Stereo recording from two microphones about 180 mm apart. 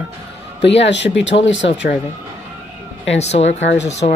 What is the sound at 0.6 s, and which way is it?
Speech, 80° left.